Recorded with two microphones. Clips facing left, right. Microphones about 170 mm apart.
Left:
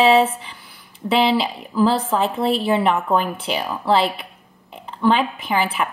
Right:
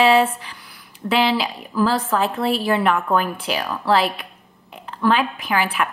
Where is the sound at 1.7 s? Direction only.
30° left (ahead or behind).